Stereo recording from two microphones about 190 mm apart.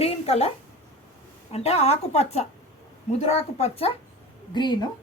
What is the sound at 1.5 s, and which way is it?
A woman's voice, 35° left (ahead or behind).